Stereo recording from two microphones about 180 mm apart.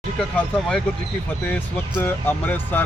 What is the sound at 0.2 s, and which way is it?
Speech, 5° left (ahead or behind).